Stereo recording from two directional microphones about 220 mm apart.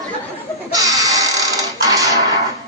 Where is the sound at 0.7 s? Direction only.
15° right (ahead or behind).